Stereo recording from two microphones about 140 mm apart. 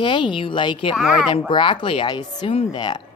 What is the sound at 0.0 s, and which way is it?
Speech, 35° left (ahead or behind).